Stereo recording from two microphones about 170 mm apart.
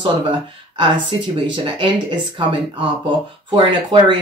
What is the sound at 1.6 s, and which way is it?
Speech, 30° right (ahead or behind).